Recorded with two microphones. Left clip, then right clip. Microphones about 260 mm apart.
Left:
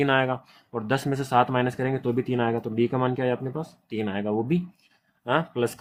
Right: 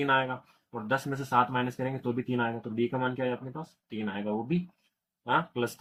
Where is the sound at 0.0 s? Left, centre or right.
Left.